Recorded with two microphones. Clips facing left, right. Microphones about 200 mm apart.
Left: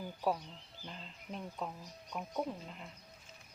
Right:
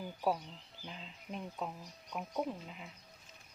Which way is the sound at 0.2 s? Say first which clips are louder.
Right 1 dB; 10° right (ahead or behind).